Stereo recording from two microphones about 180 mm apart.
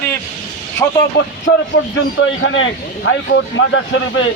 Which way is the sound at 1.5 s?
90° left.